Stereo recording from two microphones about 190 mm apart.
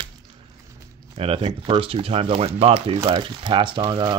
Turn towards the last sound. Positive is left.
turn(degrees=-25)  # may be behind; listen again after turning